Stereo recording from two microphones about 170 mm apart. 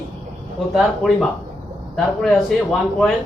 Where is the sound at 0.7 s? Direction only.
Centre (ahead or behind).